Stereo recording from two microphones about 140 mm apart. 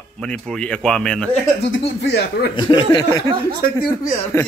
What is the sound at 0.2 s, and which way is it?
Speech, 5° left (ahead or behind).